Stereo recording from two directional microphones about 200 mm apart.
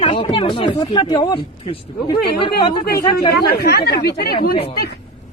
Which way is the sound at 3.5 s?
50° left (ahead or behind).